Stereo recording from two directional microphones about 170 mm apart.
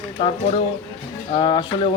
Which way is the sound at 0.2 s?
30° left (ahead or behind).